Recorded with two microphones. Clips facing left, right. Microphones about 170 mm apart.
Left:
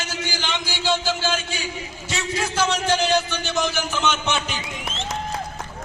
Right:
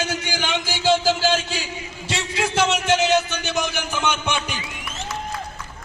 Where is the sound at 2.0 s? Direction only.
25° right (ahead or behind).